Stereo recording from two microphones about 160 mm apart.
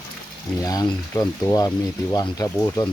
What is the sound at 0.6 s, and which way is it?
Speech, 20° left (ahead or behind).